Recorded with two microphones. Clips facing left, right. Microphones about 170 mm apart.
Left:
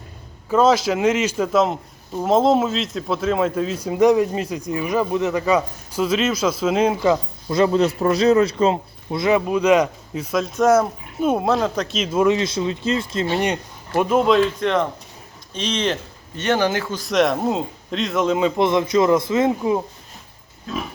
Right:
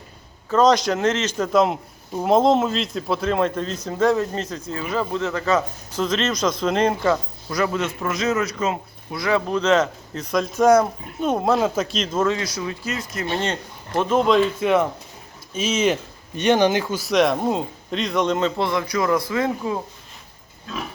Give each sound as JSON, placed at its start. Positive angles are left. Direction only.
{"t": 0.5, "sound": "a man's voice", "side_deg": 5}
{"t": 7.5, "sound": "a man's voice", "side_deg": 30}
{"t": 9.5, "sound": "a man's voice", "side_deg": 10}
{"t": 13.3, "sound": "a man's voice", "side_deg": 15}